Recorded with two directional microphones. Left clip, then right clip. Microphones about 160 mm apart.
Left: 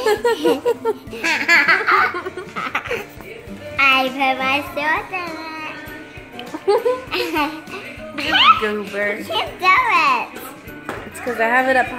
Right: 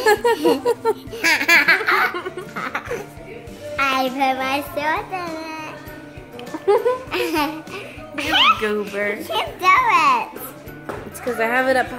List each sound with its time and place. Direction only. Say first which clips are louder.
0.0 s a child's voice: right 1 dB; 25° right (ahead or behind)
2.5 s laughter: left 4 dB; centre (ahead or behind)
3.7 s a child's voice: left 4 dB; centre (ahead or behind)
11.2 s speech: left 2 dB; centre (ahead or behind)